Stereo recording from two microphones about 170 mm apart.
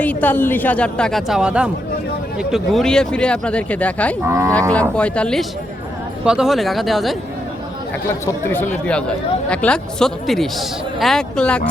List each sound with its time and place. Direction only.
0.0 s speech: 10° left (ahead or behind)
4.3 s livestock: 15° right (ahead or behind)
4.7 s speech: 5° left (ahead or behind)
8.0 s speech: 15° left (ahead or behind)